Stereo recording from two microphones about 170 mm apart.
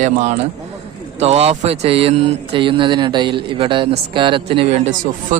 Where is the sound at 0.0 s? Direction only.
45° right (ahead or behind).